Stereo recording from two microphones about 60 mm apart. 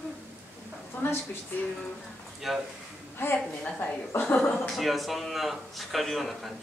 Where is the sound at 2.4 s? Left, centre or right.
Centre.